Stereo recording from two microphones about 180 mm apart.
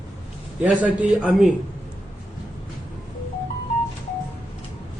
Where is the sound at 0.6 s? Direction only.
10° right (ahead or behind).